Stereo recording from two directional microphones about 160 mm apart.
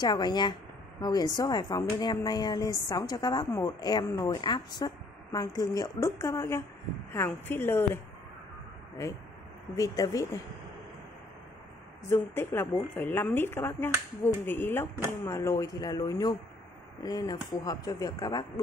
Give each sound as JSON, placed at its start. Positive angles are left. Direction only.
{"t": 0.0, "sound": "a woman's voice", "side_deg": 25}
{"t": 9.8, "sound": "a woman's voice", "side_deg": 20}
{"t": 12.1, "sound": "a woman's voice", "side_deg": 15}